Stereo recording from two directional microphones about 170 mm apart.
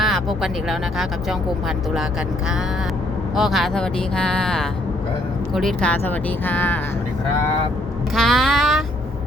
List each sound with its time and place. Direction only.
0.0 s speech: centre (ahead or behind)
3.3 s speech: centre (ahead or behind)
8.1 s a sound: centre (ahead or behind)